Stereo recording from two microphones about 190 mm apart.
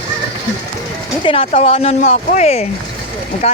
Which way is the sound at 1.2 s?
30° left (ahead or behind).